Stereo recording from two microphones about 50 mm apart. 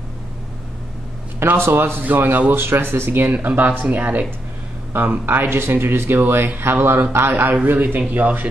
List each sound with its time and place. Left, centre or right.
1.6 s speech: right
2.5 s speech: right